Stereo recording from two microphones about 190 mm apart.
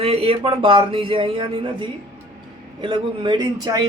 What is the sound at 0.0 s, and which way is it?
Speech, 30° right (ahead or behind).